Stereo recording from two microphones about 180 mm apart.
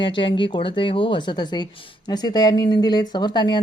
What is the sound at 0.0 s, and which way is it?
Speech, 25° left (ahead or behind).